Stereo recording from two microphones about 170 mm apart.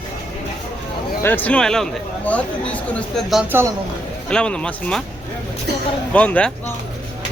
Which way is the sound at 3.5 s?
15° right (ahead or behind).